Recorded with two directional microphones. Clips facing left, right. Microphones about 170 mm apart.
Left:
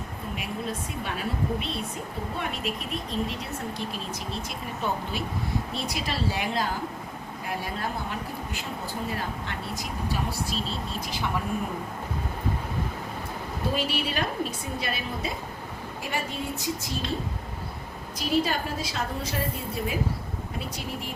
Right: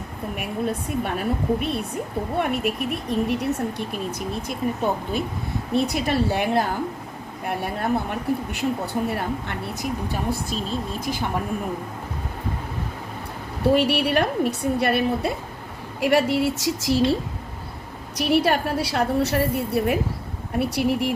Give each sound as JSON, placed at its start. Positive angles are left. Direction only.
{"t": 0.3, "sound": "speech", "side_deg": -55}
{"t": 10.5, "sound": "speech", "side_deg": -50}
{"t": 13.7, "sound": "a woman's voice", "side_deg": -65}
{"t": 16.0, "sound": "a woman's voice", "side_deg": -85}
{"t": 18.1, "sound": "a woman's voice", "side_deg": -70}